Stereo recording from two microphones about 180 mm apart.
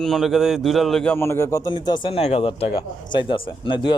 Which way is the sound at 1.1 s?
15° left (ahead or behind).